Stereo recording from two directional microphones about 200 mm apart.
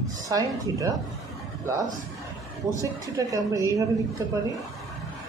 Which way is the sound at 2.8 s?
15° right (ahead or behind).